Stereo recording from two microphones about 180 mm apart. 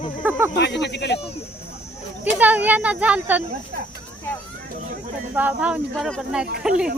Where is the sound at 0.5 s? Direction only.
75° left (ahead or behind).